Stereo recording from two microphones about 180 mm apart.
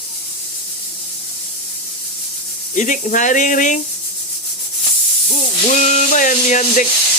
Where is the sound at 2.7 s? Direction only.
40° left (ahead or behind).